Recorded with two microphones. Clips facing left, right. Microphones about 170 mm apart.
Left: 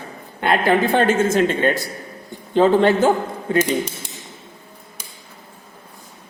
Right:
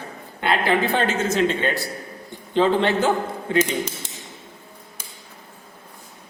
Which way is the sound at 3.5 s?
10° left (ahead or behind).